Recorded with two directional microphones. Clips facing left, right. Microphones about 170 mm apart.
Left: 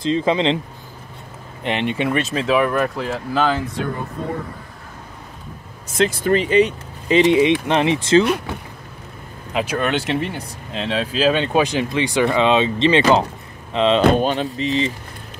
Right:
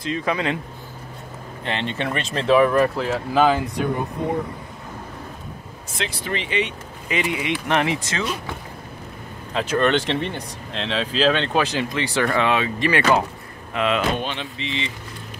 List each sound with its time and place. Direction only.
0.0 s speech: 25° left (ahead or behind)
1.6 s speech: 15° left (ahead or behind)
2.2 s speech: 5° left (ahead or behind)
5.9 s speech: 45° left (ahead or behind); by 8.2 s 25° left (ahead or behind)
9.5 s speech: 10° left (ahead or behind); by 14.0 s 25° left (ahead or behind)
14.1 s speech: 40° left (ahead or behind)